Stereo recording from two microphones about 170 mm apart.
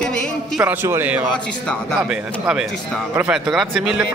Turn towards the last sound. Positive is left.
turn(degrees=-5)  # may be behind; listen again after turning